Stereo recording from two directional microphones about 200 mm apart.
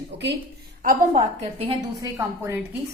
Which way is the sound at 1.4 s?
30° right (ahead or behind).